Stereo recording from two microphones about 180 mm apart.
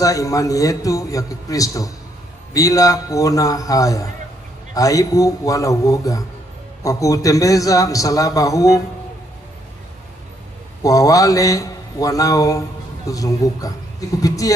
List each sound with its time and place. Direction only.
0.0 s a man's voice: 20° left (ahead or behind)
10.8 s a man's voice: 20° left (ahead or behind)